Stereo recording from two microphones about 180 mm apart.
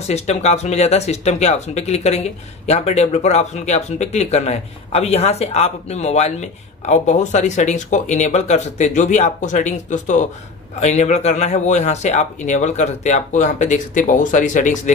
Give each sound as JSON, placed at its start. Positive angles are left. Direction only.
{"t": 0.0, "sound": "speech", "side_deg": 35}